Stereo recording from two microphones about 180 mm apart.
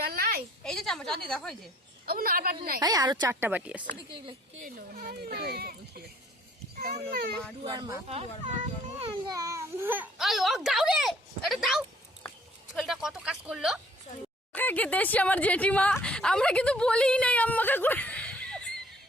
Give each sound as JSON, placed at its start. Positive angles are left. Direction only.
{"t": 0.1, "sound": "a sound", "side_deg": -55}
{"t": 0.6, "sound": "a sound", "side_deg": 5}
{"t": 1.3, "sound": "a woman's voice", "side_deg": 5}
{"t": 2.0, "sound": "a man's voice", "side_deg": -55}
{"t": 2.8, "sound": "speech", "side_deg": -20}
{"t": 4.6, "sound": "speech", "side_deg": -55}
{"t": 7.1, "sound": "speech", "side_deg": -55}
{"t": 7.6, "sound": "speech", "side_deg": -25}
{"t": 8.0, "sound": "a child's voice", "side_deg": -35}
{"t": 14.5, "sound": "speech", "side_deg": 10}